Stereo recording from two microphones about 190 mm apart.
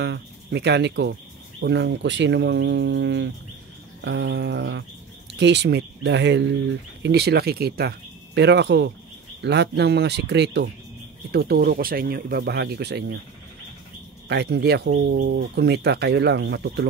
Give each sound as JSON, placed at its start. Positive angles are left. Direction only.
{"t": 0.0, "sound": "speech", "side_deg": -65}
{"t": 8.4, "sound": "speech", "side_deg": -65}
{"t": 14.3, "sound": "speech", "side_deg": -60}